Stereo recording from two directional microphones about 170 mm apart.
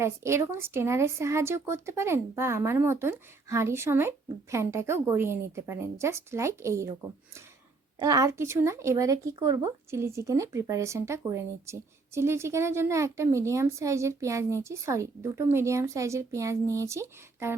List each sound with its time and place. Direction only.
0.0 s speech: 15° right (ahead or behind)